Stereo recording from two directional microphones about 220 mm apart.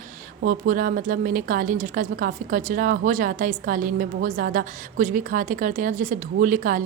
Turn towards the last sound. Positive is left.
turn(degrees=-40)  # may be behind; listen again after turning